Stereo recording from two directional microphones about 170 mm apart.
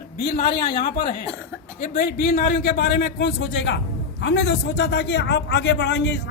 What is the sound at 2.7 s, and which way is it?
A man's voice, 80° left.